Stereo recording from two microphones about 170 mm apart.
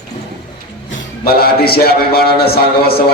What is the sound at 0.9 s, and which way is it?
Speech, 60° left (ahead or behind).